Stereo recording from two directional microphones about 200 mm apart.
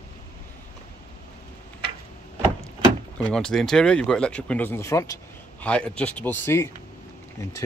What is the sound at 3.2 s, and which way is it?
Speech, 5° left (ahead or behind).